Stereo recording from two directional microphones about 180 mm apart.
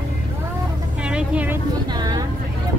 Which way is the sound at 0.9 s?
5° right (ahead or behind).